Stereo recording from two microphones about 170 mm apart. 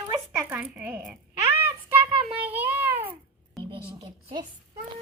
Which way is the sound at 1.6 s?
10° right (ahead or behind).